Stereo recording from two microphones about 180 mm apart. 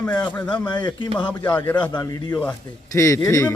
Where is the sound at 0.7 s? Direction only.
25° left (ahead or behind).